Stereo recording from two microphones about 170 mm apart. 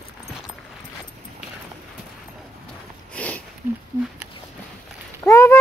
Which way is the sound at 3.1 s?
10° left (ahead or behind).